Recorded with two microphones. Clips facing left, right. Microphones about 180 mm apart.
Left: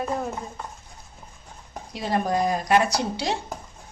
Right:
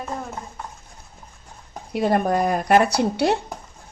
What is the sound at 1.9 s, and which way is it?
Speech, 55° right (ahead or behind).